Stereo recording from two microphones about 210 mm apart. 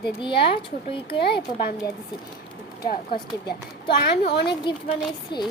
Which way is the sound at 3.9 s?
50° left (ahead or behind).